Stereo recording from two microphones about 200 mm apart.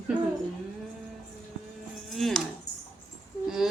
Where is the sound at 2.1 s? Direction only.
Centre (ahead or behind).